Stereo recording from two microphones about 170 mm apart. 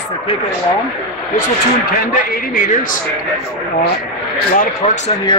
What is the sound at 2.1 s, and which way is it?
Speech, 55° left (ahead or behind).